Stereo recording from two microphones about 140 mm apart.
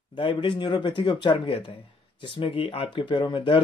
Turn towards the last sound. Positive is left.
turn(degrees=35)  # may be behind; listen again after turning